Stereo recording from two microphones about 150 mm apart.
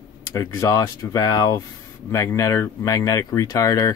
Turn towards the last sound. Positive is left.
turn(degrees=25)  # may be behind; listen again after turning